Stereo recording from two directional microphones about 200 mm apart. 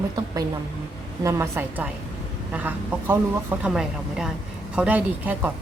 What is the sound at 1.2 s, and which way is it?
A woman's voice, 15° right (ahead or behind).